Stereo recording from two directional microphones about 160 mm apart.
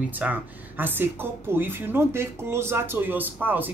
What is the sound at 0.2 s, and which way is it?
Speech, 10° right (ahead or behind).